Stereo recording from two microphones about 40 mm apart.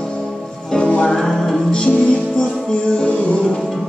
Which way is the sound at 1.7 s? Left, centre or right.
Left.